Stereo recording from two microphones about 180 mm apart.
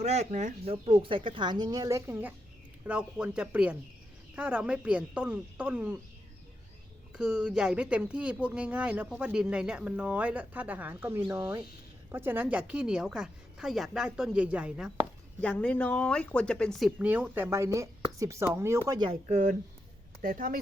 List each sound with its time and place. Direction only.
0.0 s speech: 40° right (ahead or behind); by 6.0 s 5° right (ahead or behind)
7.1 s a woman's voice: 5° right (ahead or behind)
15.4 s a woman's voice: 5° left (ahead or behind); by 18.8 s 15° right (ahead or behind)
18.9 s speech: 25° right (ahead or behind)
19.3 s speech: 40° right (ahead or behind)
20.2 s speech: 50° right (ahead or behind)